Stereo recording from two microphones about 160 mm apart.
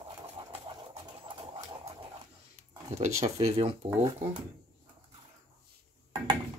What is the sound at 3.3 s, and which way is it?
Speech, 40° right (ahead or behind).